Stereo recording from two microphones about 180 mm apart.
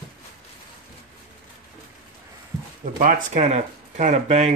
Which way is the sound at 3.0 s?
45° right (ahead or behind).